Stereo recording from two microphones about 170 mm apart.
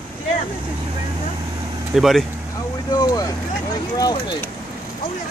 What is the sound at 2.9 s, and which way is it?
Speech, 25° left (ahead or behind).